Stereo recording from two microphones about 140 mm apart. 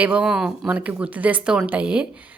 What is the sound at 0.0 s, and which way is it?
A woman's voice, 5° right (ahead or behind).